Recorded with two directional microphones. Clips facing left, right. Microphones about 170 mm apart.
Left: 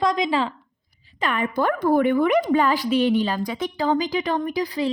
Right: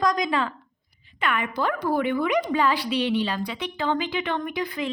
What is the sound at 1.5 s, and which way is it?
Speech, 50° left (ahead or behind).